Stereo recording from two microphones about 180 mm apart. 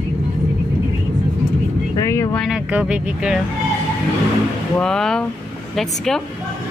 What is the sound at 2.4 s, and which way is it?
Speech, 5° right (ahead or behind).